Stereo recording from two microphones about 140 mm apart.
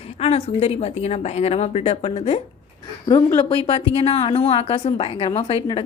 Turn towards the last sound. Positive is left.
turn(degrees=45)  # may be behind; listen again after turning